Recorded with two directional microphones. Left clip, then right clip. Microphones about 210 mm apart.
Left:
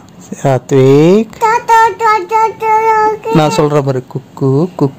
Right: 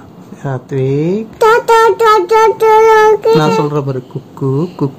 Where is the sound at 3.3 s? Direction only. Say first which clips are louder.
Left 1 dB; 30° left (ahead or behind).